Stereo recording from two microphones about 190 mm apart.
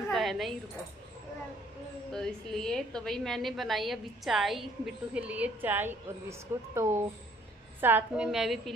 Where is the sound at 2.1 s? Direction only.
5° left (ahead or behind).